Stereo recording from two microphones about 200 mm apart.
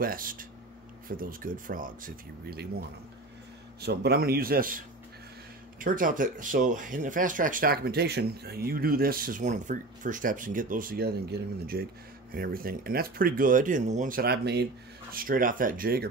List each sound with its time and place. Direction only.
0.0 s speech: 45° right (ahead or behind)
3.8 s speech: 50° right (ahead or behind)
15.1 s speech: 45° right (ahead or behind)